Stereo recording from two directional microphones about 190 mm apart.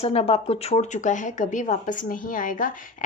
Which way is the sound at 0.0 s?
30° left (ahead or behind).